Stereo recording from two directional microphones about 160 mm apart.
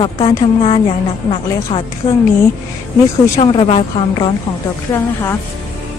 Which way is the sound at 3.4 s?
35° left (ahead or behind).